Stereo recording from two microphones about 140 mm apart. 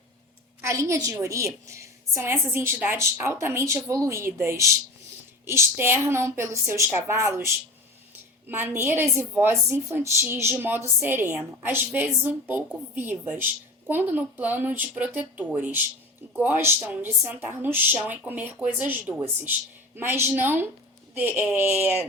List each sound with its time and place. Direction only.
0.6 s a woman's voice: 20° right (ahead or behind)